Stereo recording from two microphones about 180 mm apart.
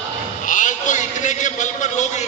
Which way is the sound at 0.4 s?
45° left (ahead or behind).